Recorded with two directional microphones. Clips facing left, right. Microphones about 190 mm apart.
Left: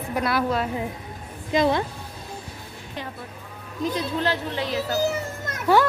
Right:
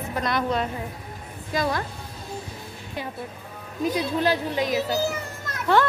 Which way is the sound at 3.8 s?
10° right (ahead or behind).